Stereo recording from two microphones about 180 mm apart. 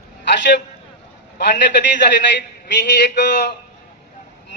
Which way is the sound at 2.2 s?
75° left (ahead or behind).